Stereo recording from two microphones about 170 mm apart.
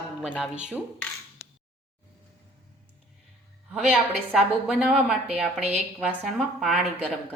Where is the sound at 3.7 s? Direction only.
5° right (ahead or behind).